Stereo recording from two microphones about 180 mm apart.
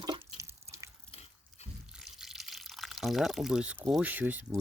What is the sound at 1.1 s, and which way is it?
Dog, 35° left (ahead or behind).